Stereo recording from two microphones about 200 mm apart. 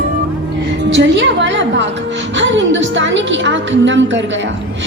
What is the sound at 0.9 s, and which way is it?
A woman's voice, 65° right (ahead or behind).